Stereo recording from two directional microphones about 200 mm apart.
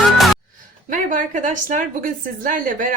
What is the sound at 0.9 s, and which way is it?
A woman's voice, 40° right (ahead or behind).